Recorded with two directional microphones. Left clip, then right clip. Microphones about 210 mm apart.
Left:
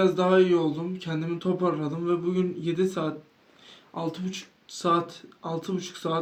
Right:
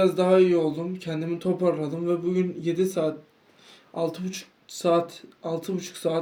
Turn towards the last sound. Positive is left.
turn(degrees=-5)  # may be behind; listen again after turning